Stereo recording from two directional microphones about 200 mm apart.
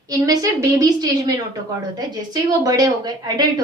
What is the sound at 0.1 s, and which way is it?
A woman's voice, 15° right (ahead or behind).